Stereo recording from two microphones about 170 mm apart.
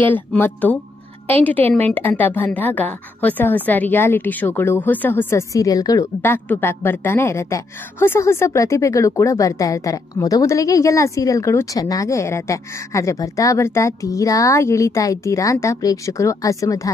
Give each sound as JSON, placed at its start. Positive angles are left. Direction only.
{"t": 0.0, "sound": "a woman's voice", "side_deg": 10}